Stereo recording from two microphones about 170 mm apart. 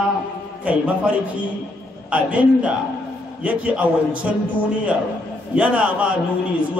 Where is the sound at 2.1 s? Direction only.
10° right (ahead or behind).